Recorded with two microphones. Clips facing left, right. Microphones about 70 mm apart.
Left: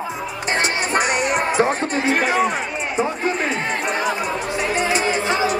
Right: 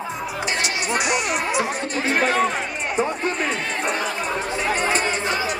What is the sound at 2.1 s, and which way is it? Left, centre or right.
Music, centre.